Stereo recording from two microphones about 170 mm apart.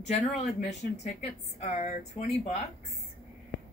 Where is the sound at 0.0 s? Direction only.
45° left (ahead or behind).